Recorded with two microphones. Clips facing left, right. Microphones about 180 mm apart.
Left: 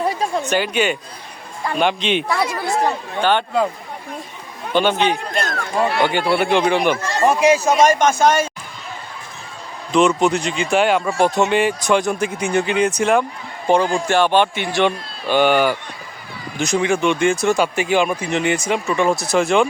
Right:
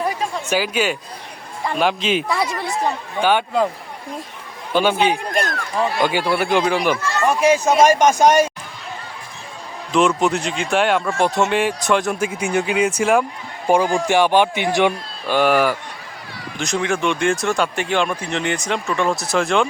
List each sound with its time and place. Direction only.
0.4 s a man's voice: 5° right (ahead or behind)
4.7 s a man's voice: 5° right (ahead or behind)
6.9 s a man's voice: 40° left (ahead or behind)
7.5 s a man's voice: centre (ahead or behind); by 8.4 s 15° right (ahead or behind)
9.9 s a man's voice: centre (ahead or behind)
15.3 s speech: centre (ahead or behind)